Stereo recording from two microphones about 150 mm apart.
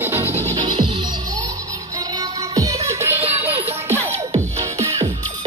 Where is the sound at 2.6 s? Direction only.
20° right (ahead or behind).